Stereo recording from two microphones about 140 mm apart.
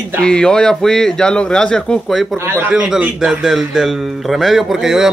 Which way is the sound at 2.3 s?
20° right (ahead or behind).